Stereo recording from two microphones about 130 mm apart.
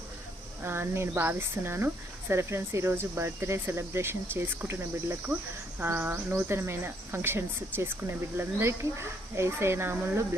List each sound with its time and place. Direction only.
0.6 s speech: 20° right (ahead or behind)